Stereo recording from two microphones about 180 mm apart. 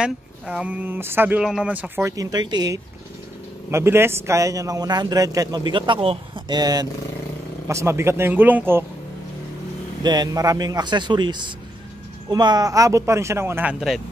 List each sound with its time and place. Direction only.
0.0 s a man's voice: 5° right (ahead or behind)
10.0 s a man's voice: 25° right (ahead or behind); by 14.0 s 5° right (ahead or behind)